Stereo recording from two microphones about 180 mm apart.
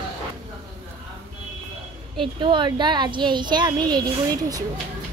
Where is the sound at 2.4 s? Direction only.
25° right (ahead or behind).